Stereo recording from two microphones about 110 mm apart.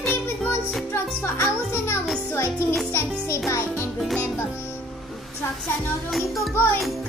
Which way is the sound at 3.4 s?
25° left (ahead or behind).